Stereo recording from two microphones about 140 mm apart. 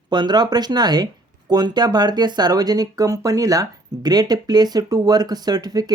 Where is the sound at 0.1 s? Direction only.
30° right (ahead or behind).